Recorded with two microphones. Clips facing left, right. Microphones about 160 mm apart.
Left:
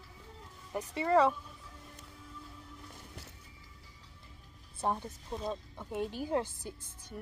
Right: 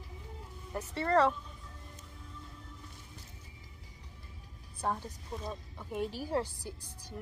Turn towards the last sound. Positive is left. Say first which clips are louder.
# even
turn(degrees=20)  # may be behind; listen again after turning